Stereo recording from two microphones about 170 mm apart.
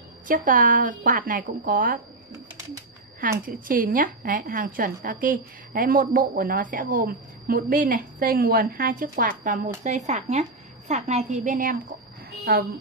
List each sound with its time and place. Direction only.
0.3 s speech: 50° right (ahead or behind)
3.2 s a woman's voice: 55° right (ahead or behind)